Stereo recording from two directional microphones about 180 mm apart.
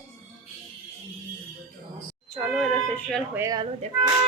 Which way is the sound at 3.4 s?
20° right (ahead or behind).